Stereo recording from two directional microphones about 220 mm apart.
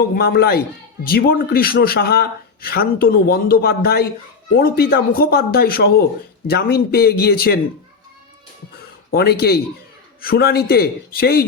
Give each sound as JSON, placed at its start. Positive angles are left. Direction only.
{"t": 0.2, "sound": "a man's voice", "side_deg": 45}
{"t": 9.1, "sound": "a man's voice", "side_deg": 45}